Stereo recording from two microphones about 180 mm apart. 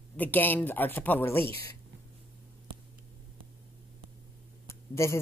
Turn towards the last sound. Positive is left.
turn(degrees=15)  # may be behind; listen again after turning